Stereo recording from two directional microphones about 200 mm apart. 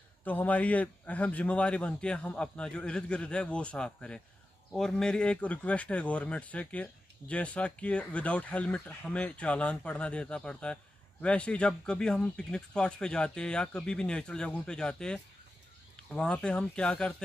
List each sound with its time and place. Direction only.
0.2 s speech: 10° left (ahead or behind)